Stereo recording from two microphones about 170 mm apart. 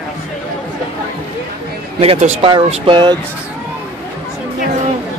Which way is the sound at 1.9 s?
35° right (ahead or behind).